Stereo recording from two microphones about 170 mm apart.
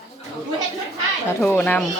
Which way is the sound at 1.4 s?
10° left (ahead or behind).